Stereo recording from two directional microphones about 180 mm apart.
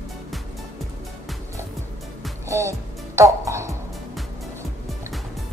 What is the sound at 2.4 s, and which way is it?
Music, 15° right (ahead or behind).